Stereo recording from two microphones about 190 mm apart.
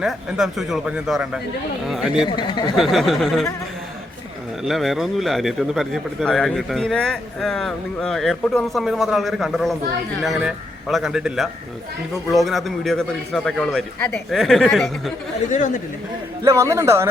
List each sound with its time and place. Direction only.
0.0 s a man's voice: centre (ahead or behind)
2.2 s speech: 25° left (ahead or behind)
2.7 s a man's voice: centre (ahead or behind)
4.6 s a man's voice: centre (ahead or behind)
15.4 s speech: 40° left (ahead or behind)
16.4 s speech: 15° right (ahead or behind)